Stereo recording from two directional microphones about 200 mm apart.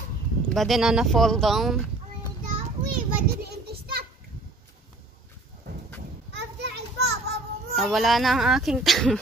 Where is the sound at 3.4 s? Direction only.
50° right (ahead or behind).